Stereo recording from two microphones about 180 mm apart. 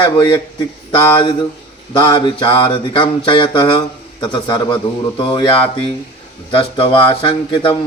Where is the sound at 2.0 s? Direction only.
25° left (ahead or behind).